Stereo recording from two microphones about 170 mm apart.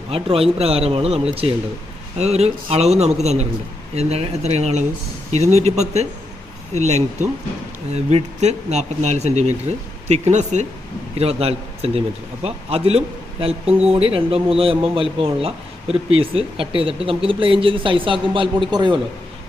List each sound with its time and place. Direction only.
0.1 s speech: 35° right (ahead or behind)